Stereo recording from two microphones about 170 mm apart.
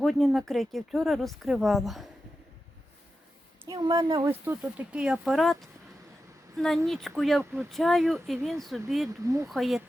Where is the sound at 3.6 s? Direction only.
20° right (ahead or behind).